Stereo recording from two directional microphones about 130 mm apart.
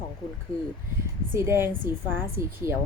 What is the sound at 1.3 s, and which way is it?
A woman's voice, 20° right (ahead or behind).